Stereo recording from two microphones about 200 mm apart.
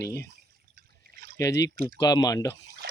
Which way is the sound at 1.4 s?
15° left (ahead or behind).